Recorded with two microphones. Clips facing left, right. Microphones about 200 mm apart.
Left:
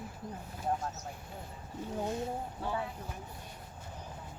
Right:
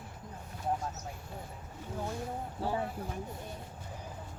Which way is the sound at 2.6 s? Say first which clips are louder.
Right 4 dB; 35° right (ahead or behind).